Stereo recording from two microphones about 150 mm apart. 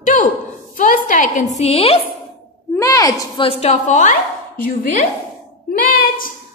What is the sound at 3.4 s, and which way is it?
Speech, 45° left (ahead or behind).